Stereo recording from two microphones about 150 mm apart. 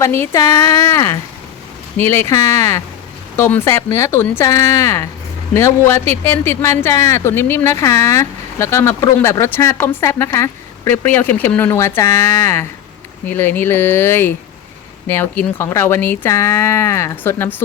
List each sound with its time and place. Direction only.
0.0 s speech: 15° left (ahead or behind)